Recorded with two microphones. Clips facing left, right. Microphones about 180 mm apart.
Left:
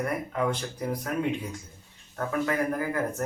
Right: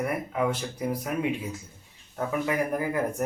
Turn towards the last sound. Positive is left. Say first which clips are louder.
# right 2 dB
turn(degrees=-15)  # may be behind; listen again after turning